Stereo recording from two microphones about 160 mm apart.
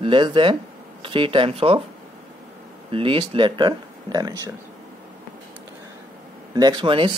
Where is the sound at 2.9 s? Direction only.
35° right (ahead or behind).